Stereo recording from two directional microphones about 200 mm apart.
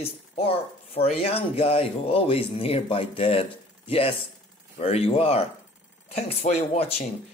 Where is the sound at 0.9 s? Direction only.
30° left (ahead or behind).